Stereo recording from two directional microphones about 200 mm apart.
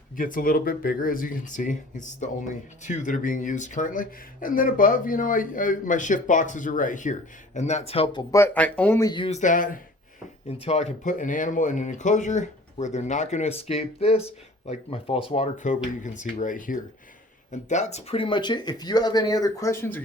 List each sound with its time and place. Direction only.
0.2 s speech: 45° left (ahead or behind); by 8.2 s 25° left (ahead or behind)
8.3 s speech: 10° left (ahead or behind); by 9.8 s 40° left (ahead or behind)
10.6 s speech: 30° left (ahead or behind); by 20.0 s 10° left (ahead or behind)